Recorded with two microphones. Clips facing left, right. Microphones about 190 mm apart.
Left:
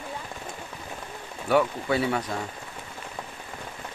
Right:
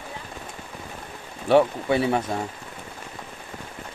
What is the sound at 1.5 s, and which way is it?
Speech, 25° right (ahead or behind).